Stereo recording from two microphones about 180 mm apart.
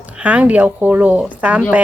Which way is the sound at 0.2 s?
10° right (ahead or behind).